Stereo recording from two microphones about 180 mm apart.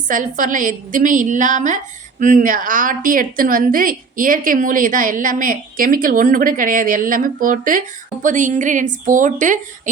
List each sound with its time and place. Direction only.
0.1 s a woman's voice: 50° right (ahead or behind)